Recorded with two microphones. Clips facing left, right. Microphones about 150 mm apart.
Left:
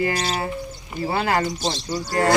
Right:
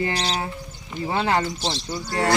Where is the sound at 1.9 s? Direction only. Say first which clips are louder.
Left 4 dB; 40° left (ahead or behind).